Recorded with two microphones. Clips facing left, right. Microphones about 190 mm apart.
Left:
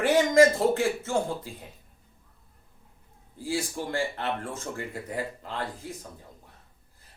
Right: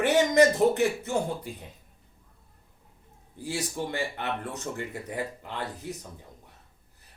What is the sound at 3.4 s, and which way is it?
Speech, 20° right (ahead or behind).